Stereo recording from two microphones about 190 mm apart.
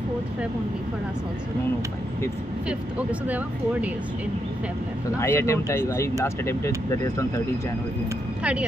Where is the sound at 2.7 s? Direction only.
5° right (ahead or behind).